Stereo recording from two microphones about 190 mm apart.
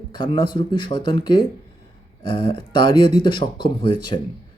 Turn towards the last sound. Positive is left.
turn(degrees=25)  # may be behind; listen again after turning